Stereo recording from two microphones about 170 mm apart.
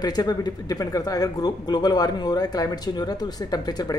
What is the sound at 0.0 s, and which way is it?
Speech, 25° left (ahead or behind).